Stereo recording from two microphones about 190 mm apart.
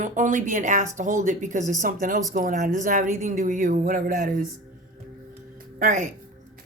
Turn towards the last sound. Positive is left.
turn(degrees=-45)  # may be behind; listen again after turning